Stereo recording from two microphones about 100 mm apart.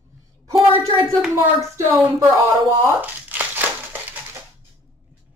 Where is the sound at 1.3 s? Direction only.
25° right (ahead or behind).